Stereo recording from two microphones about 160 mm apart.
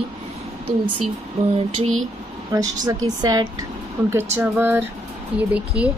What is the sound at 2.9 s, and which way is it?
Speech, 25° right (ahead or behind).